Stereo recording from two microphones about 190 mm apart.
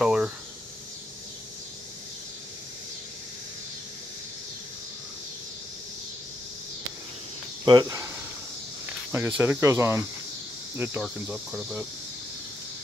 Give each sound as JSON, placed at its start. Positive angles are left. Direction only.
{"t": 0.0, "sound": "speech", "side_deg": -5}
{"t": 7.6, "sound": "speech", "side_deg": -20}
{"t": 9.1, "sound": "speech", "side_deg": -10}